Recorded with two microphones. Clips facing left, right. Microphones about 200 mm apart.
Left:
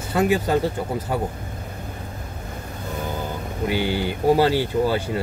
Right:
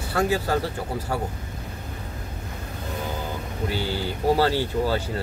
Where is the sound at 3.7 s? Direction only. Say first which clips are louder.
Left 6 dB; 15° left (ahead or behind).